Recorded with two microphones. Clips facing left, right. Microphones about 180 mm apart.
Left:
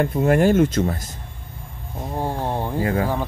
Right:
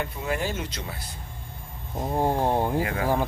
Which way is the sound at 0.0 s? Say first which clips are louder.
Left 12 dB; 50° left (ahead or behind).